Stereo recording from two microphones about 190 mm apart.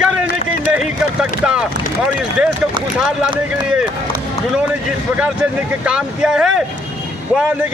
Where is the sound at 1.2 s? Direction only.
5° right (ahead or behind).